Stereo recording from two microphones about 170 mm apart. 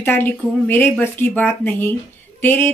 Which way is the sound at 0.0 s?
10° left (ahead or behind).